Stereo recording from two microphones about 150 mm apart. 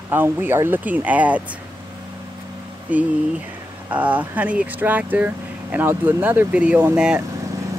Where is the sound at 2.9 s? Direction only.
10° right (ahead or behind).